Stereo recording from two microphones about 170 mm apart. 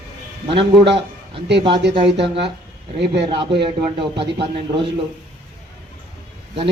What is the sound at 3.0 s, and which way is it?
Speech, 80° right.